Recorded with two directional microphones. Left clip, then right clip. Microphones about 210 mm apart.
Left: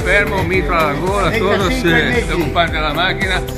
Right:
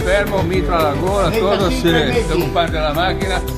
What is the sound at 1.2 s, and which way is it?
Speech, 45° right (ahead or behind).